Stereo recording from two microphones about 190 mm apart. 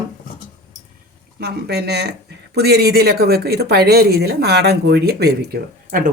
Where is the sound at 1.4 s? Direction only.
60° right (ahead or behind).